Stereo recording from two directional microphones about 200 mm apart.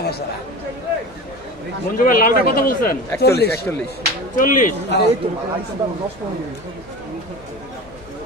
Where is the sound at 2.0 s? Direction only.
45° left (ahead or behind).